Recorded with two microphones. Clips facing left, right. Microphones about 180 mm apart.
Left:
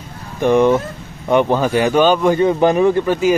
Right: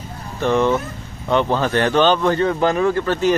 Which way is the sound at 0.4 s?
15° left (ahead or behind).